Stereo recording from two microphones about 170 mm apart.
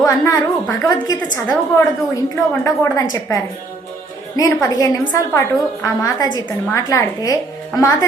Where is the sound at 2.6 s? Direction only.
20° left (ahead or behind).